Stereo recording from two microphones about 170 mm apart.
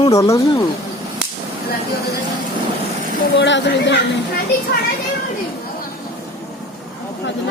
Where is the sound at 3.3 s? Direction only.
90° left.